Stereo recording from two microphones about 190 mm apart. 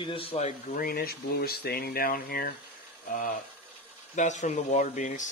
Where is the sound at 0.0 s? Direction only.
30° left (ahead or behind).